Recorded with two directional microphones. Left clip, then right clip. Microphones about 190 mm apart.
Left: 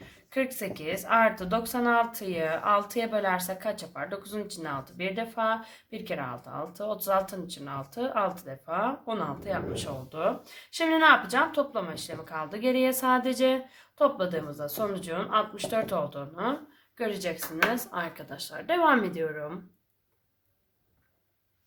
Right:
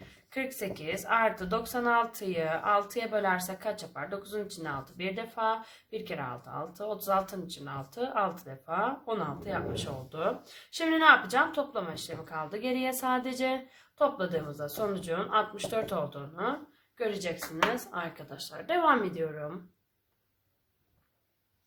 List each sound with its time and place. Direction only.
0.3 s speech: 25° left (ahead or behind)